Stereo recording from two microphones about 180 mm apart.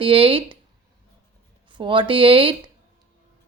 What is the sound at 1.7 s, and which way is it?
Speech, 25° right (ahead or behind).